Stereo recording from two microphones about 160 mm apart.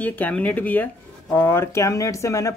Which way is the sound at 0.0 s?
10° left (ahead or behind).